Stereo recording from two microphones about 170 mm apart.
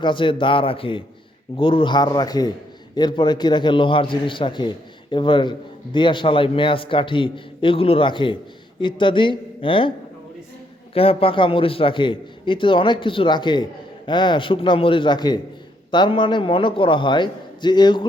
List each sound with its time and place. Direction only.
0.0 s a man's voice: 30° left (ahead or behind)
10.9 s a man's voice: 35° left (ahead or behind)